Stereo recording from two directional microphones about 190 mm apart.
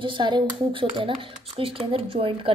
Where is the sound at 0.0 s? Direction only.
25° right (ahead or behind).